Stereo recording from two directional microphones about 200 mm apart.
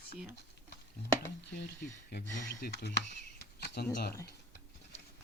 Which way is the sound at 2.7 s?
55° left (ahead or behind).